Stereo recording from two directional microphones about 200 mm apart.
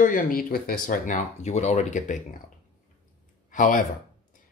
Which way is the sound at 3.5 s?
40° left (ahead or behind).